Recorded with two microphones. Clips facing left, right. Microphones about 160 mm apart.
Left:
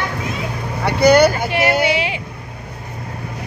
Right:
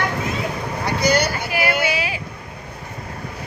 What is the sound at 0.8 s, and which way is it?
Vehicle, 60° left (ahead or behind).